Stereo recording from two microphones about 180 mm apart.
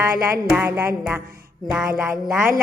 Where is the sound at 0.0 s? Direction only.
15° right (ahead or behind).